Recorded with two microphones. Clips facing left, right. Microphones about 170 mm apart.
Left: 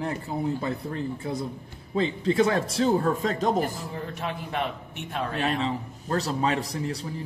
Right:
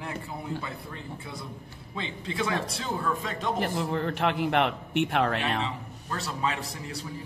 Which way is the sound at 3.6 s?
75° right (ahead or behind).